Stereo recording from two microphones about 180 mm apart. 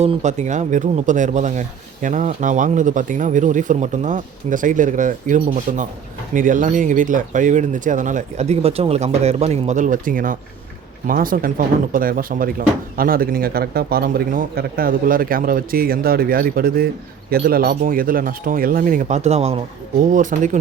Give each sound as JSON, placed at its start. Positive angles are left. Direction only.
{"t": 0.0, "sound": "speech", "side_deg": -40}
{"t": 20.0, "sound": "speech", "side_deg": -45}